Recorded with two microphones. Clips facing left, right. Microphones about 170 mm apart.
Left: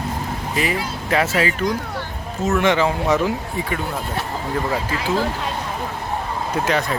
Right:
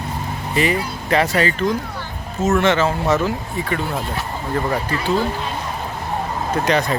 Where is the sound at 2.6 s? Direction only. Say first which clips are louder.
Right 1 dB; 15° left (ahead or behind).